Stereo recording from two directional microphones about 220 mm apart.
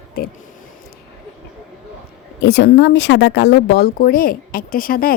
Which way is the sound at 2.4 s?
50° left (ahead or behind).